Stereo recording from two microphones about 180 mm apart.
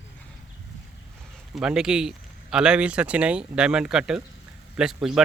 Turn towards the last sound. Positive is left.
turn(degrees=-5)  # may be behind; listen again after turning